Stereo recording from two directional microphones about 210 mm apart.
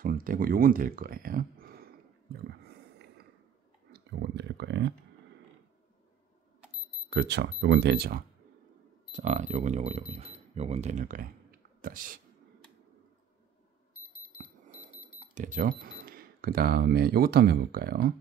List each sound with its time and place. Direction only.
0.0 s a sound: 40° right (ahead or behind)
7.1 s speech: 55° right (ahead or behind)
9.1 s speech: 35° right (ahead or behind)
15.3 s speech: 40° right (ahead or behind)